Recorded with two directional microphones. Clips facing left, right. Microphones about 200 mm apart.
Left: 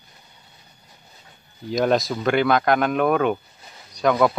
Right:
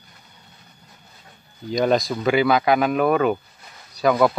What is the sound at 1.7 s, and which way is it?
Speech, centre (ahead or behind).